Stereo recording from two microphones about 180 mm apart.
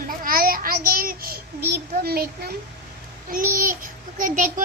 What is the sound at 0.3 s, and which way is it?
Child singing, 55° right (ahead or behind).